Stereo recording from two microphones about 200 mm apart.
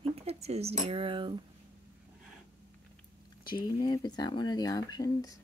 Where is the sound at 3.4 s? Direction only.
20° left (ahead or behind).